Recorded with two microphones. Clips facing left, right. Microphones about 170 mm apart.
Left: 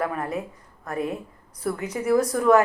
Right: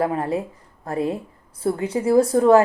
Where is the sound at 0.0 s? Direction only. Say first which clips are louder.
Right 5 dB; 30° right (ahead or behind).